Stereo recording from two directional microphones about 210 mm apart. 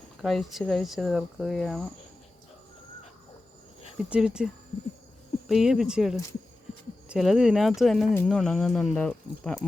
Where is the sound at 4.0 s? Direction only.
5° right (ahead or behind).